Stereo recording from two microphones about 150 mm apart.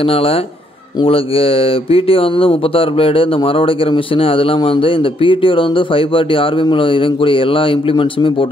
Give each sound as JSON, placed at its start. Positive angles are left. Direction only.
{"t": 0.0, "sound": "speech", "side_deg": 40}